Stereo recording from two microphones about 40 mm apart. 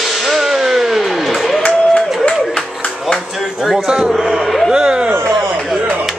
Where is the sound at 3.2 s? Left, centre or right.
Centre.